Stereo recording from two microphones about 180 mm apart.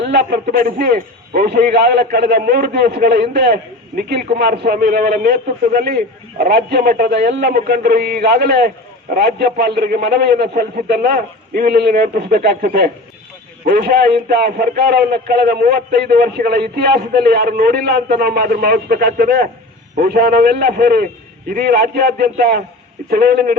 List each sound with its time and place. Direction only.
0.0 s a man's voice: 65° right (ahead or behind)